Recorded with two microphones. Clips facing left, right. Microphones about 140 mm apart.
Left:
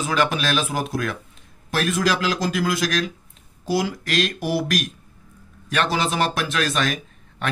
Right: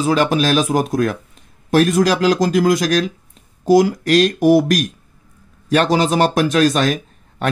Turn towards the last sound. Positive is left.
turn(degrees=-40)  # may be behind; listen again after turning